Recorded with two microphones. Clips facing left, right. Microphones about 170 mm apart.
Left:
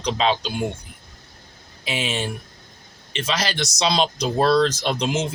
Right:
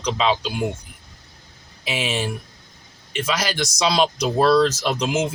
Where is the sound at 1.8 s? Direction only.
5° right (ahead or behind).